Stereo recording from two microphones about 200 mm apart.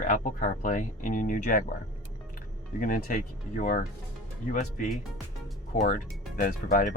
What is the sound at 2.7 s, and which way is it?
Speech, 45° left (ahead or behind).